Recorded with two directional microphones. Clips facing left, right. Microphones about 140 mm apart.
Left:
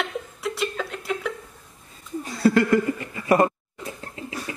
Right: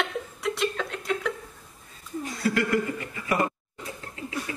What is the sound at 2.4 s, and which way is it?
Chuckle, 30° left (ahead or behind).